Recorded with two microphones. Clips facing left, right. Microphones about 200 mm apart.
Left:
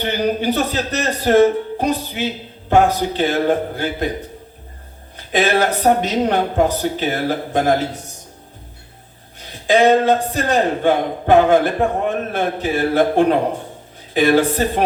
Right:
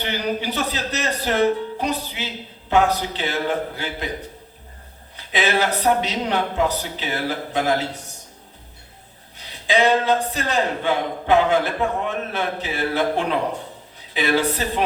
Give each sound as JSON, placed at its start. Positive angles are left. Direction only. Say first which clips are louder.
{"t": 0.0, "sound": "speech", "louder": "left 6 dB", "side_deg": 50}
{"t": 5.1, "sound": "speech", "louder": "left 5 dB", "side_deg": 50}
{"t": 9.5, "sound": "speech", "louder": "left 5 dB", "side_deg": 50}